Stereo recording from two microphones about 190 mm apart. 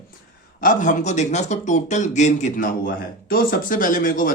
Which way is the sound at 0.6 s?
45° left (ahead or behind).